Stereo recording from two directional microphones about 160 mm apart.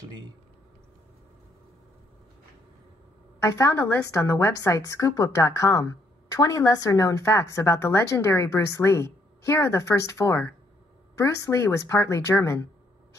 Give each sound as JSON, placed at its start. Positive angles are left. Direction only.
{"t": 3.3, "sound": "a woman's voice", "side_deg": 20}